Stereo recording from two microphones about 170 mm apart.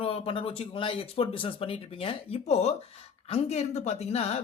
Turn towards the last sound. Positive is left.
turn(degrees=35)  # may be behind; listen again after turning